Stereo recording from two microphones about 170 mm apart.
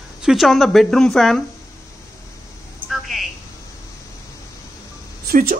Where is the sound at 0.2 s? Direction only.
Centre (ahead or behind).